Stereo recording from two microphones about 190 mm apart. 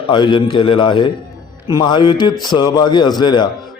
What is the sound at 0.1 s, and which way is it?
A man's voice, 25° left (ahead or behind).